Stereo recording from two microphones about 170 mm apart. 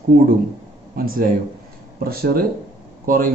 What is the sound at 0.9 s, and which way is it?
Speech, 60° right (ahead or behind).